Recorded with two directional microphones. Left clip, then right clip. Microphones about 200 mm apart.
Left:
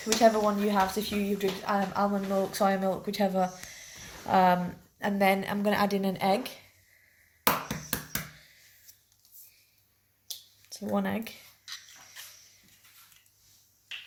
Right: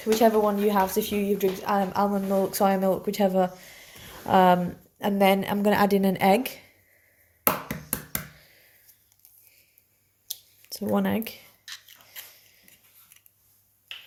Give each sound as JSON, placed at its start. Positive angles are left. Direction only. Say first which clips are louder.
{"t": 0.0, "sound": "speech", "louder": "right 3 dB", "side_deg": -45}
{"t": 8.4, "sound": "a sound", "louder": "right 1 dB", "side_deg": -40}
{"t": 10.6, "sound": "speech", "louder": "right 5 dB", "side_deg": -45}